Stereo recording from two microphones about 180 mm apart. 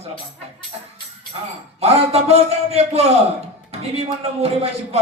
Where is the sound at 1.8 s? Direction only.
35° right (ahead or behind).